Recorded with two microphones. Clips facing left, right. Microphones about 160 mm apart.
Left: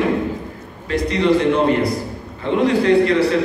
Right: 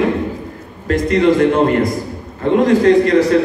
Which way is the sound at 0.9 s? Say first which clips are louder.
Right 4 dB; 50° right (ahead or behind).